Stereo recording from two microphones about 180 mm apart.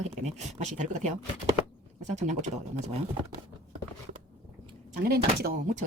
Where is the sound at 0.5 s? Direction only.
40° right (ahead or behind).